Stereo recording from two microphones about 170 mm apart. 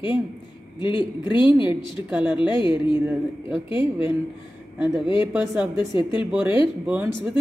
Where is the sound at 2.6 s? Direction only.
30° left (ahead or behind).